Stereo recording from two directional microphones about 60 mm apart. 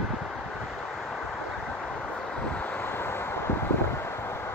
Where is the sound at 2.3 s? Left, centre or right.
Centre.